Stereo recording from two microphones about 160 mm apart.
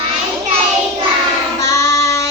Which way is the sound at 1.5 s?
20° left (ahead or behind).